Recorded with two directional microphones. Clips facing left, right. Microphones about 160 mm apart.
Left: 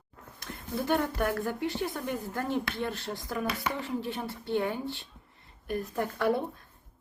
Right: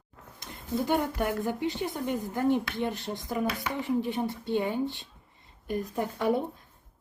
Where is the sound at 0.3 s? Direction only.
20° right (ahead or behind).